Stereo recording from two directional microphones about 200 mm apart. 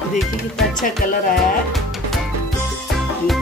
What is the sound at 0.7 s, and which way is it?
Music, 45° left (ahead or behind).